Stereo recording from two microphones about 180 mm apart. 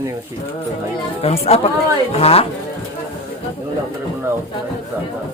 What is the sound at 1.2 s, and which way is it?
Speech, 35° left (ahead or behind).